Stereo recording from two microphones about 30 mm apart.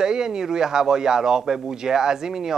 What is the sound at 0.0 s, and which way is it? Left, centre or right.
Speech, right.